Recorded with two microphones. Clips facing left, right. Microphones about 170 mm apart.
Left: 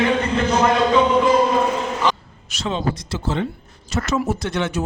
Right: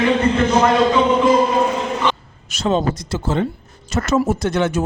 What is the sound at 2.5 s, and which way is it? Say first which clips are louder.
Speech: right 5 dB; 45° right (ahead or behind).